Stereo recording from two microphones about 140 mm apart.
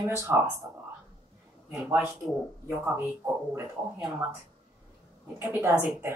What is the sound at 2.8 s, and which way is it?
Speech, 15° right (ahead or behind).